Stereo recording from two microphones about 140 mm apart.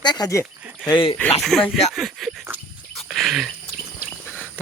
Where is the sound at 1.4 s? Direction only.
Centre (ahead or behind).